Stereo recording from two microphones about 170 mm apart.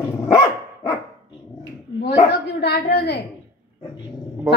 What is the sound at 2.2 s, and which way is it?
Speech, 75° left (ahead or behind).